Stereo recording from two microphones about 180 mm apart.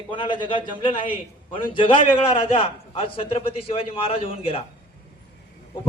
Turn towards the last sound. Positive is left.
turn(degrees=30)  # may be behind; listen again after turning